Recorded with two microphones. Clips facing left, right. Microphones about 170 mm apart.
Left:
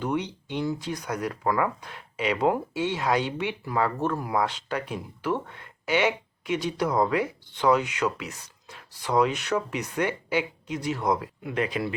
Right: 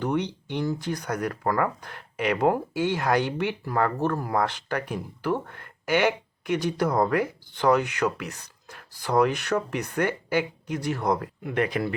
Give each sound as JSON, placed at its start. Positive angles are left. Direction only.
{"t": 0.0, "sound": "a sound", "side_deg": -60}
{"t": 0.9, "sound": "speech", "side_deg": -60}
{"t": 4.9, "sound": "speech", "side_deg": -45}